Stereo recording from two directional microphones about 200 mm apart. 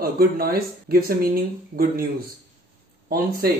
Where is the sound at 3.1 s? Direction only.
45° right (ahead or behind).